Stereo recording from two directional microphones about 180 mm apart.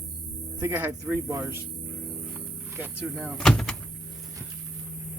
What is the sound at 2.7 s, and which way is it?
Speech, 10° right (ahead or behind).